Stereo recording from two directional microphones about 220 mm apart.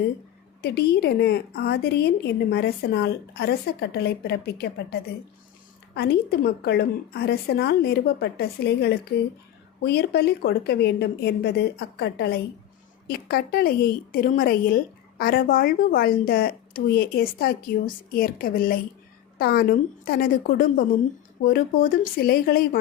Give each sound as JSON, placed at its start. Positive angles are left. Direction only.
{"t": 0.6, "sound": "a woman's voice", "side_deg": 45}